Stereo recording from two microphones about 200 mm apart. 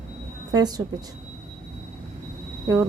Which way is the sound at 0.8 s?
15° right (ahead or behind).